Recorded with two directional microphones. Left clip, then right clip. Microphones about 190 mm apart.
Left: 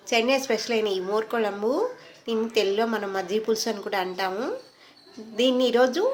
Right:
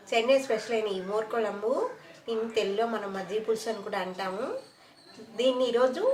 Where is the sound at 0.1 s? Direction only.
55° left (ahead or behind).